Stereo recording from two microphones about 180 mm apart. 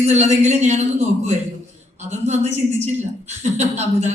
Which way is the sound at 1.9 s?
40° right (ahead or behind).